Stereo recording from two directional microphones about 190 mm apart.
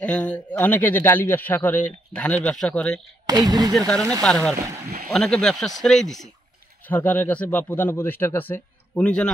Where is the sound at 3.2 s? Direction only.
20° right (ahead or behind).